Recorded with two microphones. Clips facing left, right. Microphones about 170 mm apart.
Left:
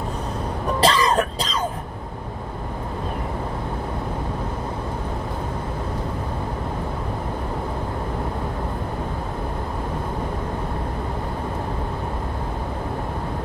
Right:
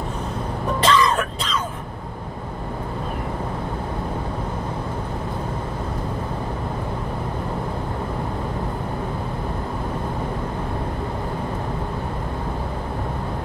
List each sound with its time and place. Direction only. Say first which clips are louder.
0.7 s music: even; 35° left (ahead or behind)